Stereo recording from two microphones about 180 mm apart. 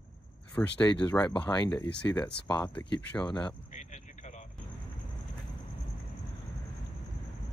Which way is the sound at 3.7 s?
45° left (ahead or behind).